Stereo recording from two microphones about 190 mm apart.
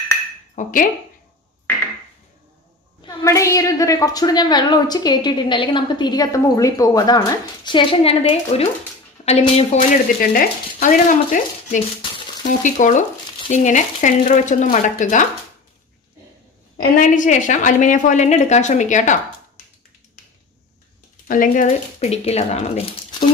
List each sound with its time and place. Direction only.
0.6 s stir: 45° left (ahead or behind)
3.0 s a woman's voice: 20° left (ahead or behind); by 9.8 s 35° left (ahead or behind)
10.3 s stir: 45° left (ahead or behind)
12.0 s frying: 25° left (ahead or behind)
12.4 s speech: 40° left (ahead or behind)
17.0 s speech: 45° left (ahead or behind)
21.3 s speech: 45° left (ahead or behind)